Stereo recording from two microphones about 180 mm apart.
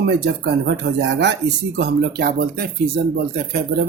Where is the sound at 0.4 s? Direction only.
75° right (ahead or behind).